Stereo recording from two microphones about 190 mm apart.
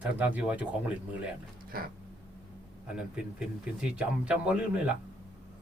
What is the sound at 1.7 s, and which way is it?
Speech, 50° right (ahead or behind).